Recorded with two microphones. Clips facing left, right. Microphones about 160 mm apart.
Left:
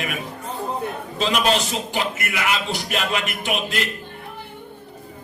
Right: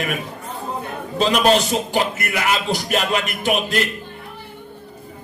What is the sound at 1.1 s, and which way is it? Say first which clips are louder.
A man's voice: right 5 dB; 40° right (ahead or behind).